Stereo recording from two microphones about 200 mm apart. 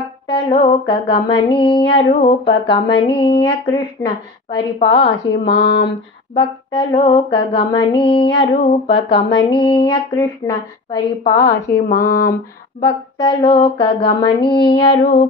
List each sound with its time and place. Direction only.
0.3 s speech: 25° left (ahead or behind)
5.3 s speech: 55° left (ahead or behind)
6.3 s speech: 25° left (ahead or behind)
11.9 s a sound: 50° left (ahead or behind)
13.2 s speech: 25° left (ahead or behind)